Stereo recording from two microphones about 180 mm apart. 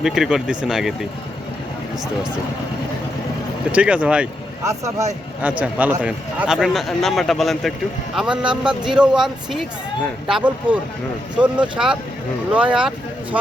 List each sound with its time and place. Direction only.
0.0 s speech: centre (ahead or behind)
3.7 s speech: 5° right (ahead or behind)
4.6 s speech: 15° right (ahead or behind)